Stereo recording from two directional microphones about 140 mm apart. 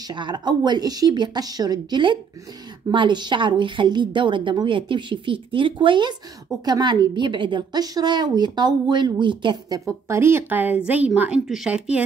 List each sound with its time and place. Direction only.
0.1 s a woman's voice: 30° right (ahead or behind); by 12.0 s 5° right (ahead or behind)